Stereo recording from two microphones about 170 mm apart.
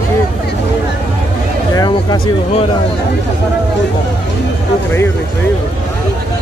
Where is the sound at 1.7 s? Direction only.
25° left (ahead or behind).